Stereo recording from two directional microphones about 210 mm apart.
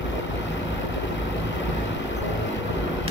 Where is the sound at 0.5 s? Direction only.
60° left (ahead or behind).